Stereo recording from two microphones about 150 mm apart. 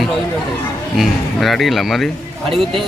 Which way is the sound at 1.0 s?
Centre (ahead or behind).